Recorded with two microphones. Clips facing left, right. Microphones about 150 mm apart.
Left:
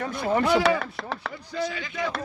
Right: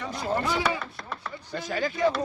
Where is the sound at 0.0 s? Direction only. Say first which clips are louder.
Left 4 dB; 55° left (ahead or behind).